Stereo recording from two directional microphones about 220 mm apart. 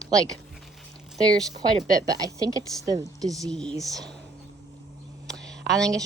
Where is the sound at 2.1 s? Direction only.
15° right (ahead or behind).